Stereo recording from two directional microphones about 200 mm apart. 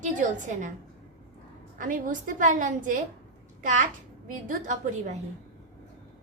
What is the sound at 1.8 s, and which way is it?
A woman's voice, 40° right (ahead or behind).